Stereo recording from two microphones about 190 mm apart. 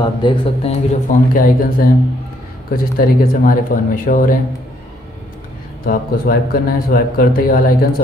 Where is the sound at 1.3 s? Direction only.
50° left (ahead or behind).